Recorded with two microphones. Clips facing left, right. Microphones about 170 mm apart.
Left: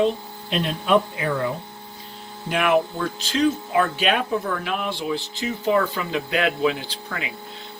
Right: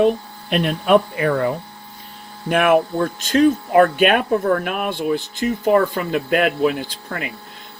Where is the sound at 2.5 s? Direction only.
50° right (ahead or behind).